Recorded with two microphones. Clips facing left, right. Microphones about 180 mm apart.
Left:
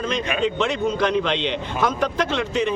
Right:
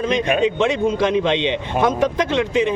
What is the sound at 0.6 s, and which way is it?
Speech, 20° right (ahead or behind).